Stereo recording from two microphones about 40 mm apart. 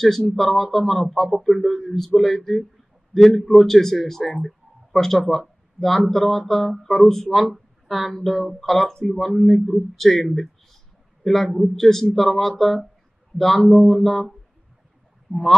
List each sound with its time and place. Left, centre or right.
0.3 s a man's voice: centre
7.3 s a man's voice: centre
10.3 s a sound: centre
11.2 s a man's voice: centre
15.3 s speech: left